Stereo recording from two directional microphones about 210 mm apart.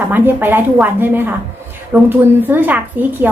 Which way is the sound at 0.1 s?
10° right (ahead or behind).